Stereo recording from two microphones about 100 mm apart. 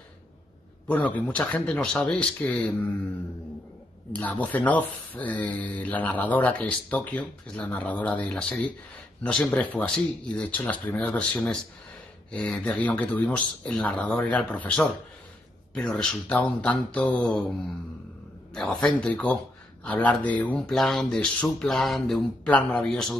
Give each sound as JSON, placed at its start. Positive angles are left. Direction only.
{"t": 0.8, "sound": "speech", "side_deg": 15}
{"t": 4.1, "sound": "speech", "side_deg": 15}
{"t": 18.5, "sound": "speech", "side_deg": 5}
{"t": 22.5, "sound": "speech", "side_deg": 15}